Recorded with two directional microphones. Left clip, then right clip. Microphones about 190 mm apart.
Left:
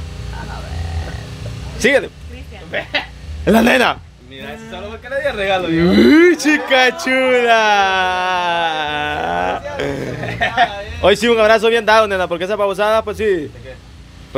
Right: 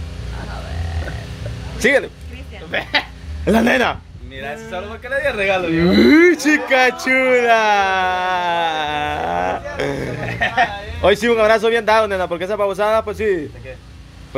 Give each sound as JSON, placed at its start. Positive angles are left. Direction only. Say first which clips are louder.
{"t": 1.8, "sound": "speech", "louder": "left 1 dB", "side_deg": 15}
{"t": 3.4, "sound": "a man's voice", "louder": "left 3 dB", "side_deg": 15}
{"t": 5.1, "sound": "speech", "louder": "even", "side_deg": -15}
{"t": 5.8, "sound": "speech", "louder": "left 1 dB", "side_deg": 10}
{"t": 11.1, "sound": "a man's voice", "louder": "left 2 dB", "side_deg": 15}